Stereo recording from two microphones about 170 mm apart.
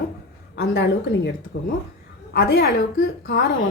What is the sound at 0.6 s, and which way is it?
Speech, 75° left (ahead or behind).